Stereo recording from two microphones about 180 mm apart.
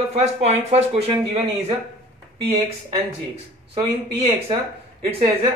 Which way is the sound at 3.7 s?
30° right (ahead or behind).